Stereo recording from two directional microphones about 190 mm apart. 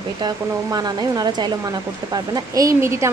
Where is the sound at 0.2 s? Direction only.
20° right (ahead or behind).